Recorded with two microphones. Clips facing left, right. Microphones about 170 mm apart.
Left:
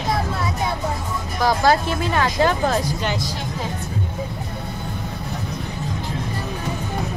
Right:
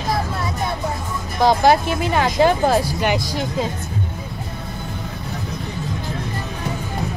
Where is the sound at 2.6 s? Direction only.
35° right (ahead or behind).